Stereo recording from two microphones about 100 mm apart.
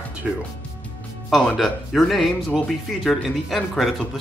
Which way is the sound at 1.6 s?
Centre (ahead or behind).